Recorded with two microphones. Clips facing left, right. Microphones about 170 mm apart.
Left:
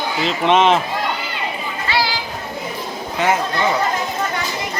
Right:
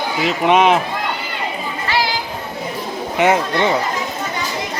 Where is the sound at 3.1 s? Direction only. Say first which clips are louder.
Right 3 dB; 25° right (ahead or behind).